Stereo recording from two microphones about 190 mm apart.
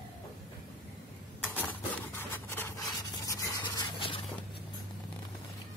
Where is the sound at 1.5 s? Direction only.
10° left (ahead or behind).